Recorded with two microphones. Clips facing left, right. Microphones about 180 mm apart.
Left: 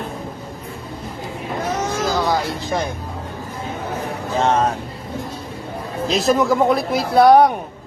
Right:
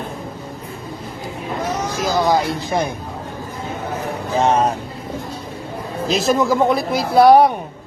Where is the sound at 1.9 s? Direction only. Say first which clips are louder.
Even; 10° right (ahead or behind).